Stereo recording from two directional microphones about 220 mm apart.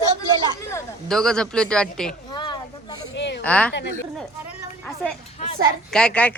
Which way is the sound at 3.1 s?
50° left (ahead or behind).